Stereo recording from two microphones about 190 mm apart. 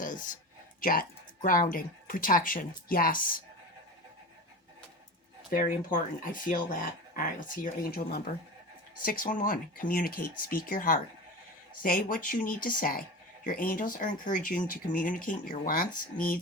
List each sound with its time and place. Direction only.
0.0 s a sound: 45° left (ahead or behind)
0.8 s speech: 45° left (ahead or behind)
5.5 s speech: 45° left (ahead or behind)